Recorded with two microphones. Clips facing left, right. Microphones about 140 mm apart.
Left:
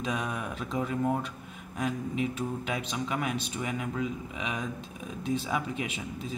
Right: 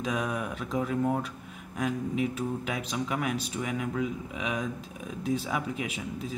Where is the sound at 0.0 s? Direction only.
Centre (ahead or behind).